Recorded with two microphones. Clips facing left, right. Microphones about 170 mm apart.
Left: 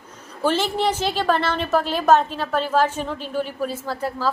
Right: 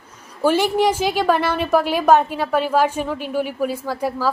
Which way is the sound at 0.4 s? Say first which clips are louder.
Right 4 dB; 10° right (ahead or behind).